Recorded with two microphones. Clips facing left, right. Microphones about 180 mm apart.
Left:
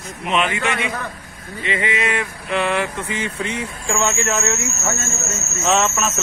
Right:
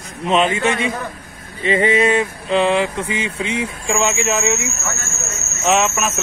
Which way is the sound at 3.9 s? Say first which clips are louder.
Right 2 dB; 10° right (ahead or behind).